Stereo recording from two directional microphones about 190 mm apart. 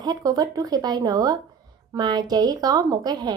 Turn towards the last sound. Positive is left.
turn(degrees=-20)  # may be behind; listen again after turning